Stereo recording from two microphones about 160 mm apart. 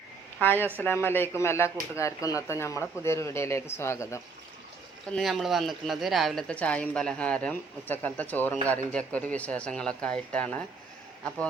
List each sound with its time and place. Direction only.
0.3 s a woman's voice: 10° left (ahead or behind)
5.1 s speech: centre (ahead or behind)